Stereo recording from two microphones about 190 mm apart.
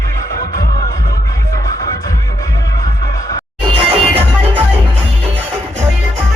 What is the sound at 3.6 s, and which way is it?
Music, 30° right (ahead or behind).